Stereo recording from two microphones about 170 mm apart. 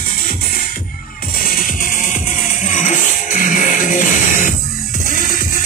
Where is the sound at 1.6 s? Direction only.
50° left (ahead or behind).